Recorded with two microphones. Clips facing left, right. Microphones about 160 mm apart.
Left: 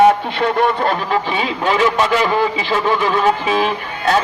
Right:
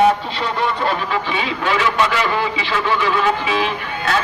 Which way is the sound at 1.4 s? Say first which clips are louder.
Left 3 dB; 45° left (ahead or behind).